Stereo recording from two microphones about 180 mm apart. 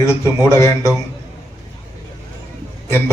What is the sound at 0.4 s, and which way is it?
Speech, 15° left (ahead or behind).